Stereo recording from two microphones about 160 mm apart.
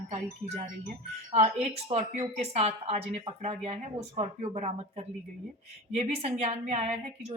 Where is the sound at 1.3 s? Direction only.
40° right (ahead or behind).